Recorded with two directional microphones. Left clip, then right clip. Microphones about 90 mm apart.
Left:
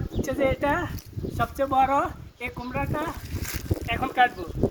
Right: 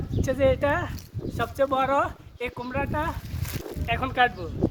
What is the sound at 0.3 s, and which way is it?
Speech, 35° right (ahead or behind).